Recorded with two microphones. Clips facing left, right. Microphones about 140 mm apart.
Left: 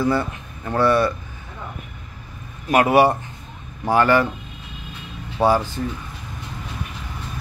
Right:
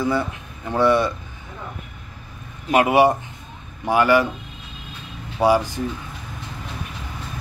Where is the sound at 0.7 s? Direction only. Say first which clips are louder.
Even; 15° right (ahead or behind).